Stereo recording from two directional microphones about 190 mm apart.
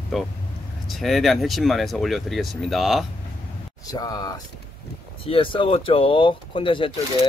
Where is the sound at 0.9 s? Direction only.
Centre (ahead or behind).